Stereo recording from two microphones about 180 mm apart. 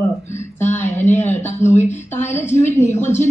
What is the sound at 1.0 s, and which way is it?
Speech, 10° left (ahead or behind).